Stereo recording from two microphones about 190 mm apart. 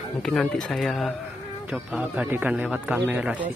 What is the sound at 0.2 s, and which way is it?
Speech, 5° left (ahead or behind).